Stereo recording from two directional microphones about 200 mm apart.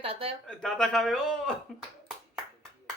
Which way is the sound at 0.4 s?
5° left (ahead or behind).